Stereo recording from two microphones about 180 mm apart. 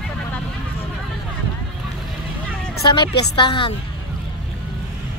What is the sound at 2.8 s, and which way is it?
Speech, 25° left (ahead or behind).